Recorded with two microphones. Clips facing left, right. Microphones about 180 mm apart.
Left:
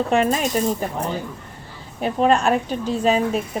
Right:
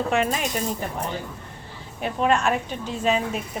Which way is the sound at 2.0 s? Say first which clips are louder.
Left 4 dB; 35° left (ahead or behind).